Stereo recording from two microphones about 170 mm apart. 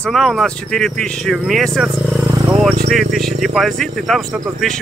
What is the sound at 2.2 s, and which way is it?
Vehicle, 20° right (ahead or behind).